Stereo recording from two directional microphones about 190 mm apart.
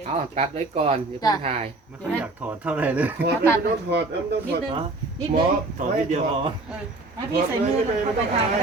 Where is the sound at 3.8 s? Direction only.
60° right (ahead or behind).